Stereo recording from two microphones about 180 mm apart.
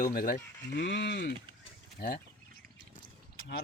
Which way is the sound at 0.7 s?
75° left (ahead or behind).